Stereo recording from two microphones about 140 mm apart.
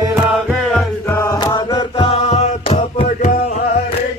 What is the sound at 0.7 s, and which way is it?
Music, 20° left (ahead or behind).